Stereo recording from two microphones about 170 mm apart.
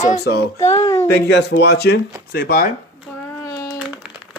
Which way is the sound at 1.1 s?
80° left.